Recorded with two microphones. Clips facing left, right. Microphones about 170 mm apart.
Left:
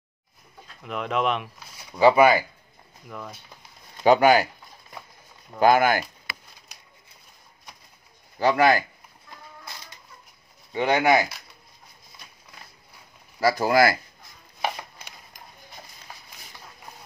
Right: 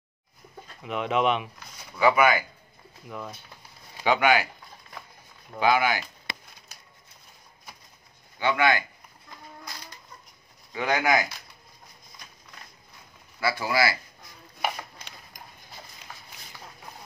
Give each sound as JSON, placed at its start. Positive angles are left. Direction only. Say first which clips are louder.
{"t": 0.8, "sound": "speech", "louder": "right 1 dB", "side_deg": 0}
{"t": 2.0, "sound": "speech", "louder": "left 5 dB", "side_deg": 30}
{"t": 3.1, "sound": "speech", "louder": "right 1 dB", "side_deg": 0}
{"t": 4.0, "sound": "speech", "louder": "left 5 dB", "side_deg": 40}
{"t": 5.6, "sound": "speech", "louder": "left 5 dB", "side_deg": 50}
{"t": 8.4, "sound": "speech", "louder": "left 4 dB", "side_deg": 40}
{"t": 10.7, "sound": "speech", "louder": "left 4 dB", "side_deg": 25}
{"t": 13.4, "sound": "speech", "louder": "left 6 dB", "side_deg": 40}